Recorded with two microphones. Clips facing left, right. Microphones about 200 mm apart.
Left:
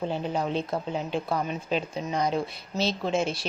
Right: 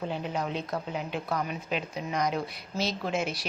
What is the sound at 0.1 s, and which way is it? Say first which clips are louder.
A woman's voice: left 4 dB; 30° left (ahead or behind).